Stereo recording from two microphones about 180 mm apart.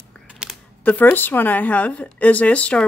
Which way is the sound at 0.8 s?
10° left (ahead or behind).